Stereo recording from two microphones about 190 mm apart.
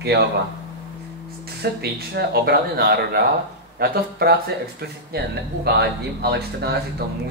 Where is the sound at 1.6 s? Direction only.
60° right (ahead or behind).